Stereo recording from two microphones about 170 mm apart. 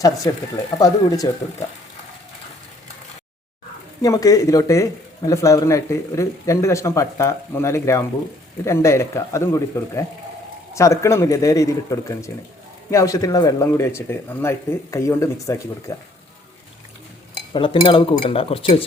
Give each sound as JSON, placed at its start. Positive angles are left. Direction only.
{"t": 0.3, "sound": "speech", "side_deg": 15}
{"t": 4.0, "sound": "speech", "side_deg": 20}
{"t": 17.5, "sound": "speech", "side_deg": 30}